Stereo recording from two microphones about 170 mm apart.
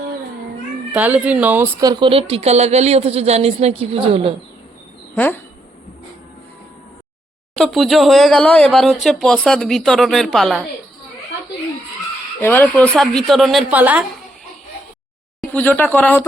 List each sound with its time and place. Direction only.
0.9 s speech: 10° right (ahead or behind)
1.8 s speech: 25° right (ahead or behind)
5.1 s speech: 10° left (ahead or behind)
7.6 s speech: centre (ahead or behind)
12.4 s speech: 10° left (ahead or behind); by 14.0 s 10° right (ahead or behind)
15.4 s speech: 10° left (ahead or behind)